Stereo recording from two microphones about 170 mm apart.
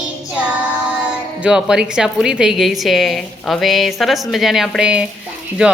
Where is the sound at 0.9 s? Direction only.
5° right (ahead or behind).